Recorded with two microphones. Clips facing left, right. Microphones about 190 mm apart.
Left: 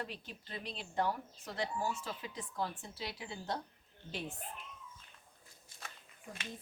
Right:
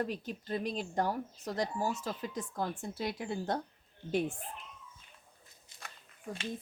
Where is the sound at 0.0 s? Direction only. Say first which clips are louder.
Right 9 dB; 45° right (ahead or behind).